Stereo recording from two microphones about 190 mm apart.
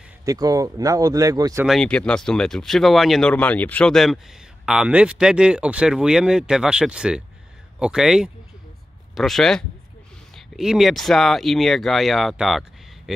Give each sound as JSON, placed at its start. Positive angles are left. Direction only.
{"t": 0.2, "sound": "speech", "side_deg": -20}
{"t": 1.7, "sound": "speech", "side_deg": 5}